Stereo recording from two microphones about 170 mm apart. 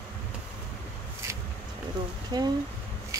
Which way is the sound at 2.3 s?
25° right (ahead or behind).